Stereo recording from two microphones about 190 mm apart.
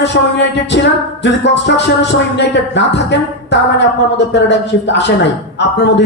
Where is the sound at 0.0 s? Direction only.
65° left (ahead or behind).